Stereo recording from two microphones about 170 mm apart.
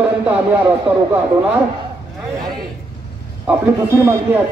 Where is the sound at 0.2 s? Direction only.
10° right (ahead or behind).